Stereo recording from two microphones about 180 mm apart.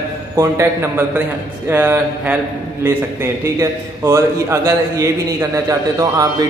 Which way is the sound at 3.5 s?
15° right (ahead or behind).